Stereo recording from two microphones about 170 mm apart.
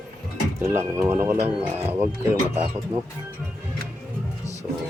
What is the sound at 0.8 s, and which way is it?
Speech, 15° right (ahead or behind).